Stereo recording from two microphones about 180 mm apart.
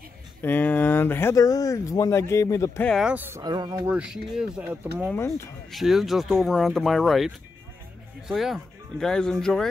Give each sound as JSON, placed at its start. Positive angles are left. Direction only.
{"t": 0.4, "sound": "speech", "side_deg": 10}
{"t": 2.9, "sound": "speech", "side_deg": -5}
{"t": 3.8, "sound": "speech", "side_deg": -5}
{"t": 5.0, "sound": "speech", "side_deg": 15}
{"t": 5.7, "sound": "speech", "side_deg": 0}